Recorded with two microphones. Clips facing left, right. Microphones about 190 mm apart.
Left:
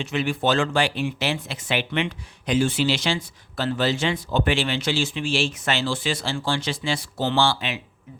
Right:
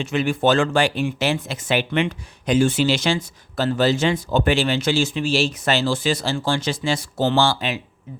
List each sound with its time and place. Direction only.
0.0 s speech: 45° right (ahead or behind)